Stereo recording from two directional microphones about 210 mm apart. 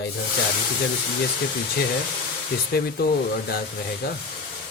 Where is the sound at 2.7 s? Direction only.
50° left (ahead or behind).